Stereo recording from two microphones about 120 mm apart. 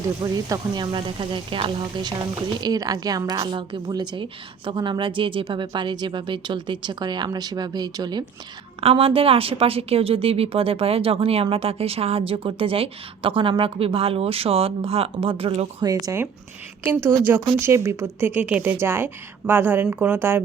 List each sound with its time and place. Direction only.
0.2 s a woman's voice: 30° right (ahead or behind)
8.8 s speech: 50° right (ahead or behind)
15.8 s a woman's voice: 30° right (ahead or behind)
16.9 s a woman's voice: 20° right (ahead or behind)